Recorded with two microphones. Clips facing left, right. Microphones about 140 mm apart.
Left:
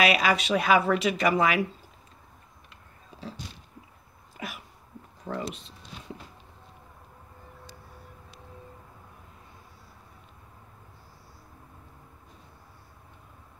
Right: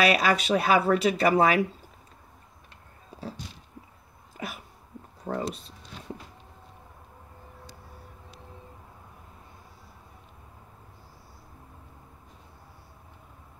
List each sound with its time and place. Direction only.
0.0 s speech: 40° right (ahead or behind)
4.4 s a sound: 40° right (ahead or behind)
5.2 s speech: 40° right (ahead or behind)